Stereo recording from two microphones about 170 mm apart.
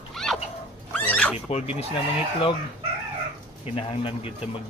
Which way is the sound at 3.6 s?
35° left (ahead or behind).